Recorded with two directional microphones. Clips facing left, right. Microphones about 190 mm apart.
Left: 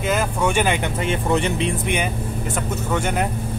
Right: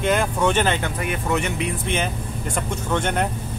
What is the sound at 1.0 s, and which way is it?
Speech, 30° left (ahead or behind).